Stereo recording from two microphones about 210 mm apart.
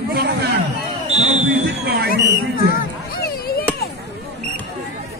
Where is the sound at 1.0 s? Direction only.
30° right (ahead or behind).